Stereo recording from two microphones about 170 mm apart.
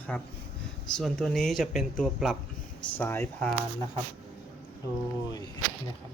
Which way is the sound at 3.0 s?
10° left (ahead or behind).